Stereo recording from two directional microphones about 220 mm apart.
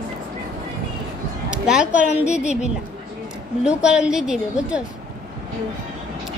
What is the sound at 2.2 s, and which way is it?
Speech, 30° left (ahead or behind).